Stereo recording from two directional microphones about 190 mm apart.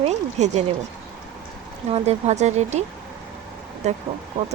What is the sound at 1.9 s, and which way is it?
Speech, 35° right (ahead or behind).